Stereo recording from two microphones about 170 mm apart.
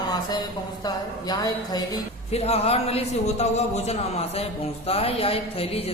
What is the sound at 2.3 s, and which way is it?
A woman's voice, 35° left (ahead or behind).